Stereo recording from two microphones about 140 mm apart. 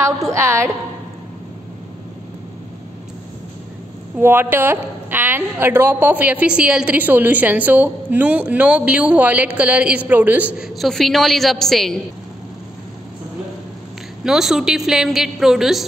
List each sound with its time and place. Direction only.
0.0 s a woman's voice: 20° right (ahead or behind)
4.2 s a woman's voice: 15° right (ahead or behind)
10.8 s a woman's voice: centre (ahead or behind)
14.2 s a woman's voice: 5° right (ahead or behind)